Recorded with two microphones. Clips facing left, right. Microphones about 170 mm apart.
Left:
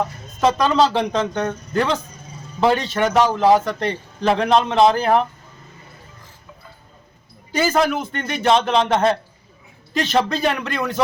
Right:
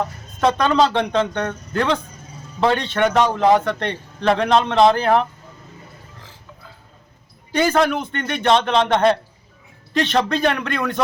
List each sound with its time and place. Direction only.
0.0 s a man's voice: 5° left (ahead or behind)
6.1 s music: 80° right
7.5 s a man's voice: 5° left (ahead or behind)